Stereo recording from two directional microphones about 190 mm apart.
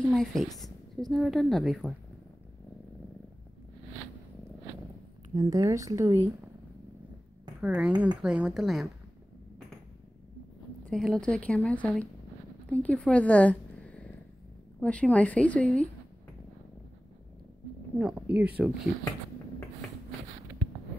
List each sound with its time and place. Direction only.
0.0 s a woman's voice: centre (ahead or behind)
5.3 s speech: 20° right (ahead or behind)
7.6 s a woman's voice: 5° right (ahead or behind)
10.9 s a woman's voice: centre (ahead or behind)
17.9 s speech: 5° right (ahead or behind)